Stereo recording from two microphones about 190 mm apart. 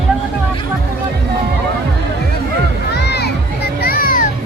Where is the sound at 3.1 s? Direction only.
55° left (ahead or behind).